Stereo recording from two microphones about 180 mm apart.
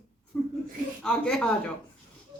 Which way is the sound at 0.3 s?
10° left (ahead or behind).